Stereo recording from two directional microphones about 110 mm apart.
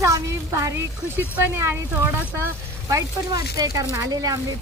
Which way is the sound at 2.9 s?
35° right (ahead or behind).